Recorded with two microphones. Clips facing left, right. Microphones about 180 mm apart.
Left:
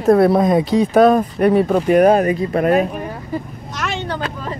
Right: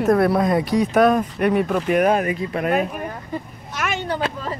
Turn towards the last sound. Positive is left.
turn(degrees=-10)  # may be behind; listen again after turning